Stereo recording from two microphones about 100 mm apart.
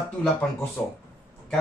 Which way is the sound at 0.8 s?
20° left (ahead or behind).